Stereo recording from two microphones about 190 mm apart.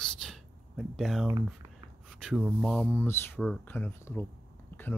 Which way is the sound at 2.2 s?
Centre (ahead or behind).